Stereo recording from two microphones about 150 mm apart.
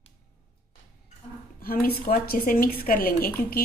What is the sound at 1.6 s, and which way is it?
A woman's voice, 80° left.